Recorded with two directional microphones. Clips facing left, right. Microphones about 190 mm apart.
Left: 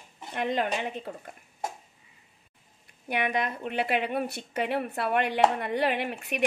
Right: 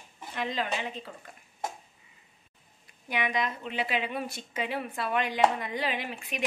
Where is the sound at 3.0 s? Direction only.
55° left (ahead or behind).